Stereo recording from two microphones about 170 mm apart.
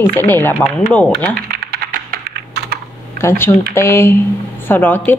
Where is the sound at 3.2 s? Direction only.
15° left (ahead or behind).